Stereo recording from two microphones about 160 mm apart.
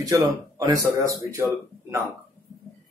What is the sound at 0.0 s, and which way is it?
Speech, 20° right (ahead or behind).